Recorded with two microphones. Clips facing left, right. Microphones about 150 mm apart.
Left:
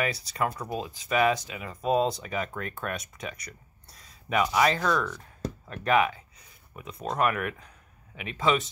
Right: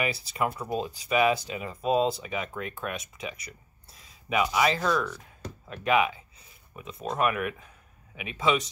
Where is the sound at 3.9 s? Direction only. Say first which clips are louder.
Even; 25° right (ahead or behind).